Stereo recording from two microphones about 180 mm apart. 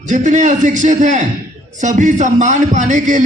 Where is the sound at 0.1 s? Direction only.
45° right (ahead or behind).